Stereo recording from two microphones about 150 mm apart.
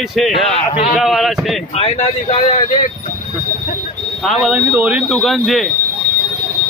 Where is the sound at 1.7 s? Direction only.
40° left (ahead or behind).